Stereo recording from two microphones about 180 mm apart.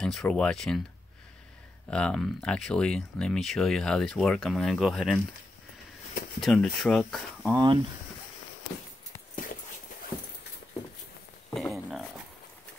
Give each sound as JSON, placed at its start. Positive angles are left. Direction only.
{"t": 0.0, "sound": "speech", "side_deg": 0}
{"t": 1.9, "sound": "speech", "side_deg": 5}
{"t": 6.4, "sound": "speech", "side_deg": 0}
{"t": 7.5, "sound": "speech", "side_deg": -25}
{"t": 11.5, "sound": "a sound", "side_deg": 0}